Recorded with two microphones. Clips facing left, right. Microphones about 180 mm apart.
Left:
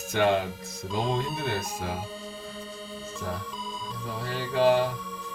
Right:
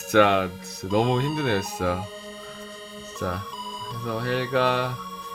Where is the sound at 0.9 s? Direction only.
90° right.